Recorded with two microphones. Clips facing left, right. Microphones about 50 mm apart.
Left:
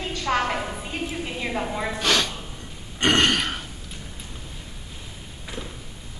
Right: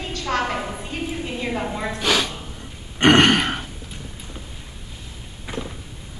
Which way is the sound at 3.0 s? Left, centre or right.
Right.